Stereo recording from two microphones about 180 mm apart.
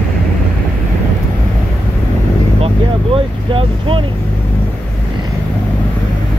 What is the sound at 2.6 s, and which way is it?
Vehicle, 30° right (ahead or behind).